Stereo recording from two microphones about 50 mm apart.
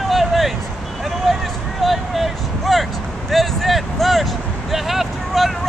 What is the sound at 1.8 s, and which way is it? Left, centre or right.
Vehicle, centre.